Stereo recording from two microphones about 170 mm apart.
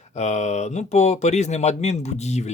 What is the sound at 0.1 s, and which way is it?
Speech, 40° left (ahead or behind).